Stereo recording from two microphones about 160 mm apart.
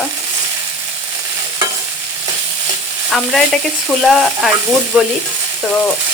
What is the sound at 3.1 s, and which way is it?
Stir, centre (ahead or behind).